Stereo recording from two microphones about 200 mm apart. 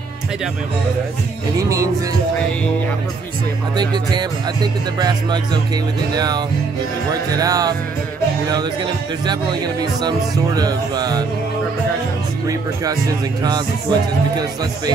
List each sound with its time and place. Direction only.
1.6 s speech: 15° right (ahead or behind)
3.7 s speech: 20° right (ahead or behind)
10.0 s speech: 20° right (ahead or behind)
13.4 s speech: 20° right (ahead or behind)